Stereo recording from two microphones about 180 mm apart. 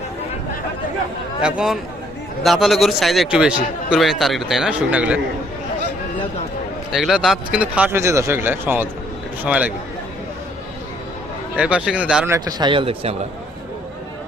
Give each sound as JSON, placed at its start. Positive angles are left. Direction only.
{"t": 1.4, "sound": "speech", "side_deg": -5}
{"t": 6.9, "sound": "speech", "side_deg": 0}
{"t": 11.5, "sound": "speech", "side_deg": -5}
{"t": 12.5, "sound": "speech", "side_deg": -25}